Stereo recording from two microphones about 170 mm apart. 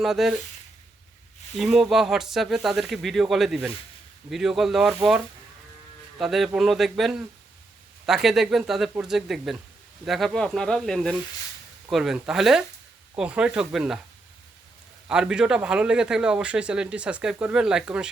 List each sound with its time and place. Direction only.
0.0 s a man's voice: centre (ahead or behind)
1.5 s a man's voice: centre (ahead or behind)
6.1 s a man's voice: centre (ahead or behind)
15.0 s a man's voice: 5° right (ahead or behind)